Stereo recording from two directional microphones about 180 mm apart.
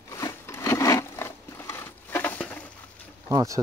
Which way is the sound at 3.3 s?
20° right (ahead or behind).